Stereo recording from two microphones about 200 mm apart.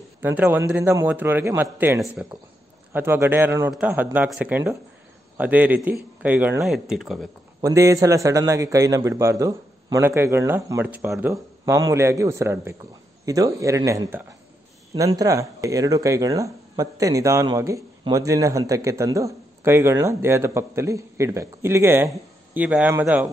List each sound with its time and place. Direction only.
0.2 s speech: 10° right (ahead or behind)
7.6 s speech: 15° right (ahead or behind)